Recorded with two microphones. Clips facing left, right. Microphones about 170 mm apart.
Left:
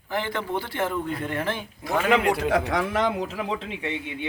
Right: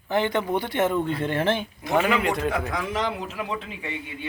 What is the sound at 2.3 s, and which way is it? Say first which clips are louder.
Speech: left 3 dB; 70° left (ahead or behind).